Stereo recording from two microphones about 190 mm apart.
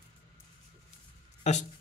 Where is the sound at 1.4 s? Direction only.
35° left (ahead or behind).